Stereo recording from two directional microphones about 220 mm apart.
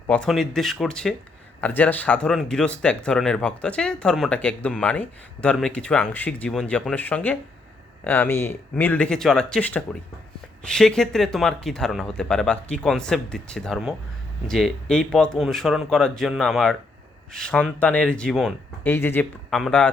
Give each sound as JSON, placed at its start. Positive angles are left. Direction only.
{"t": 0.1, "sound": "speech", "side_deg": 5}